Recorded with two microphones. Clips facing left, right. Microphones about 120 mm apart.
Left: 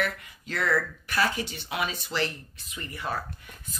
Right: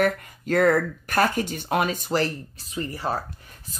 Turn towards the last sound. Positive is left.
turn(degrees=-35)  # may be behind; listen again after turning